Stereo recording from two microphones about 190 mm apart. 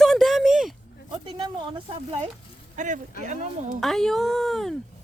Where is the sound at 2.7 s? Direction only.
40° right (ahead or behind).